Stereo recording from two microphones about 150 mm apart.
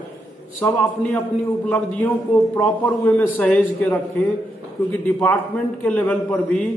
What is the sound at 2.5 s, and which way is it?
A man's voice, 15° left (ahead or behind).